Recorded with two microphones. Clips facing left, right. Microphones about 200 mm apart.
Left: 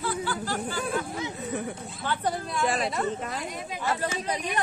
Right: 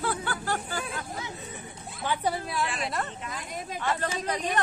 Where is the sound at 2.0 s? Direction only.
10° right (ahead or behind).